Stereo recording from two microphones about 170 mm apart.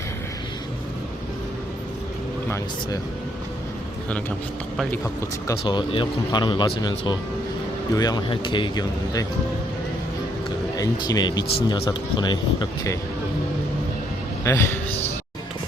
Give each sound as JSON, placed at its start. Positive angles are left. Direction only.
{"t": 5.6, "sound": "speech", "side_deg": 30}
{"t": 10.8, "sound": "speech", "side_deg": 25}
{"t": 14.4, "sound": "a man's voice", "side_deg": 15}